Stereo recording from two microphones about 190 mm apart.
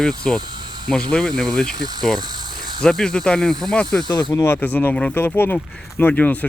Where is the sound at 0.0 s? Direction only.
5° left (ahead or behind).